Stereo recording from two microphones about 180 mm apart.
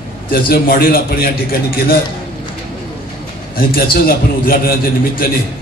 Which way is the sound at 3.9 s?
55° left (ahead or behind).